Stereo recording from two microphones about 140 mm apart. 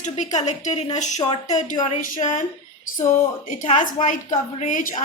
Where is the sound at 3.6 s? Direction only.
60° left (ahead or behind).